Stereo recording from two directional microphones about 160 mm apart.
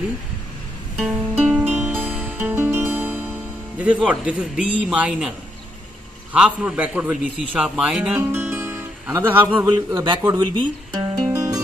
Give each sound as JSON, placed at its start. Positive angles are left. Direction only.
{"t": 0.9, "sound": "music", "side_deg": -5}
{"t": 3.7, "sound": "a man's voice", "side_deg": -10}
{"t": 6.3, "sound": "a man's voice", "side_deg": -5}
{"t": 9.9, "sound": "a man's voice", "side_deg": -20}
{"t": 10.9, "sound": "music", "side_deg": -25}